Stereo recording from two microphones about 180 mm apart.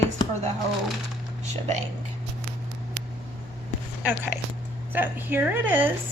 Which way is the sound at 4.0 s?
10° right (ahead or behind).